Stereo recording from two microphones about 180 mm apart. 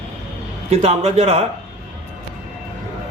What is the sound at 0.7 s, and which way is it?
Speech, 35° right (ahead or behind).